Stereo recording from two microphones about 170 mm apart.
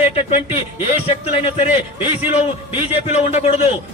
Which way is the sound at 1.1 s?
35° left (ahead or behind).